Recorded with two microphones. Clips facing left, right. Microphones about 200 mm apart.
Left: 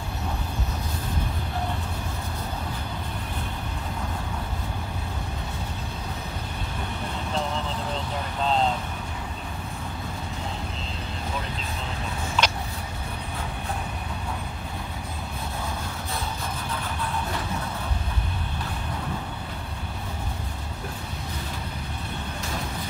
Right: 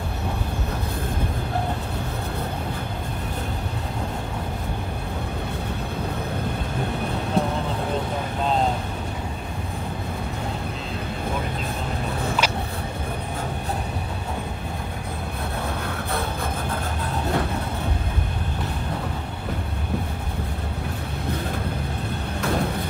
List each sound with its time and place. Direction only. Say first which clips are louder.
7.4 s vehicle: right 6 dB; 60° right (ahead or behind)
12.4 s vehicle: right 2 dB; 10° right (ahead or behind)
22.4 s vehicle: right 12 dB; 60° right (ahead or behind)